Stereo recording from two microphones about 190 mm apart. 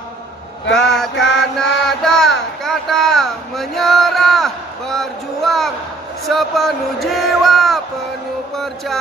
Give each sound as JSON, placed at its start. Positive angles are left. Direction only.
{"t": 0.7, "sound": "speech", "side_deg": 0}
{"t": 1.6, "sound": "a sound", "side_deg": 5}
{"t": 6.2, "sound": "speech", "side_deg": 0}